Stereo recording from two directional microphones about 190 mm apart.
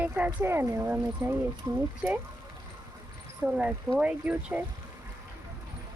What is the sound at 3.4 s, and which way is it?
Speech, 5° right (ahead or behind).